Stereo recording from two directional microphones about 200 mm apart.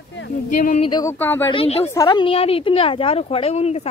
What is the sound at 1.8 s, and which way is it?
A woman's voice, 15° left (ahead or behind).